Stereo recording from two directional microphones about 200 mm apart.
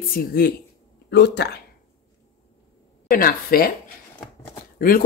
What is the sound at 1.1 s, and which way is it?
Speech, 55° left (ahead or behind).